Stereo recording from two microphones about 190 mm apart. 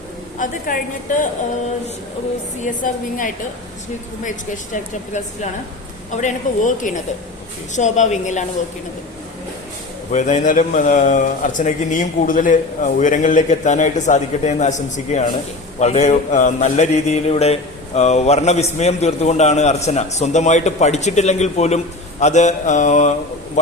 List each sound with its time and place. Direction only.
0.3 s a woman's voice: 45° left (ahead or behind)
2.6 s a woman's voice: 45° left (ahead or behind)
10.1 s speech: 40° left (ahead or behind)